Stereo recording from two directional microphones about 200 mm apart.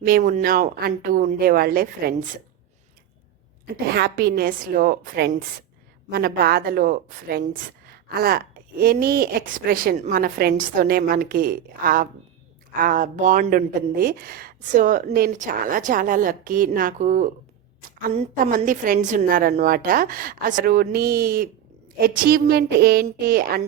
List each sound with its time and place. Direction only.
0.0 s a woman's voice: 45° right (ahead or behind)
3.8 s a woman's voice: 55° right (ahead or behind)
18.3 s a woman's voice: 40° right (ahead or behind)